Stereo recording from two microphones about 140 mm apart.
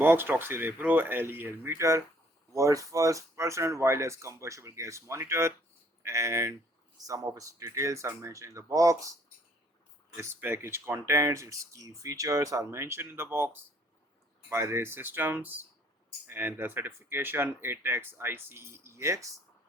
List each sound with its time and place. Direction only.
0.0 s speech: 15° right (ahead or behind)
10.2 s speech: 15° right (ahead or behind)